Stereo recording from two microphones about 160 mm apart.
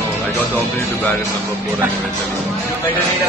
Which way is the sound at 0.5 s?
10° left (ahead or behind).